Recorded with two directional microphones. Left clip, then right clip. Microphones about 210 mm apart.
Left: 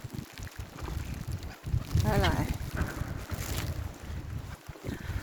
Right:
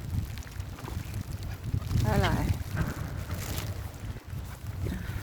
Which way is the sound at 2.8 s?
50° right (ahead or behind).